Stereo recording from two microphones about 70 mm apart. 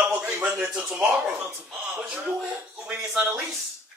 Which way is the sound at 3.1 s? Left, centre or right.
Centre.